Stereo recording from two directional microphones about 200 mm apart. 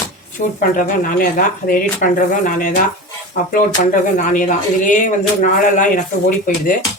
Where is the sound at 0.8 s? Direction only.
45° left (ahead or behind).